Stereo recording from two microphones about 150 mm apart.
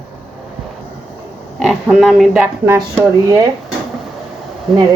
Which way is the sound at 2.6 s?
15° right (ahead or behind).